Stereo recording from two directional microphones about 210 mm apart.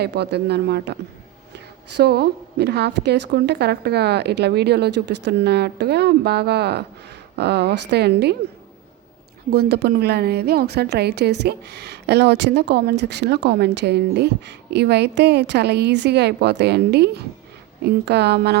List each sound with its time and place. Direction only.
0.0 s a woman's voice: 50° right (ahead or behind)
9.5 s a woman's voice: 50° right (ahead or behind)